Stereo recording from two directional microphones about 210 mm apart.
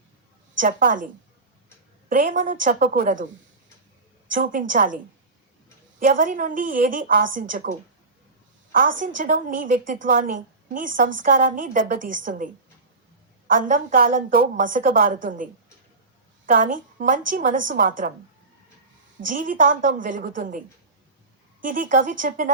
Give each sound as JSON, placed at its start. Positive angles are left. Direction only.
{"t": 0.6, "sound": "a woman's voice", "side_deg": -40}
{"t": 2.0, "sound": "a woman's voice", "side_deg": -40}
{"t": 4.3, "sound": "a woman's voice", "side_deg": -40}
{"t": 6.0, "sound": "a woman's voice", "side_deg": -40}
{"t": 13.5, "sound": "a woman's voice", "side_deg": -40}
{"t": 16.5, "sound": "a woman's voice", "side_deg": -40}
{"t": 19.3, "sound": "a woman's voice", "side_deg": -40}
{"t": 21.6, "sound": "a woman's voice", "side_deg": -40}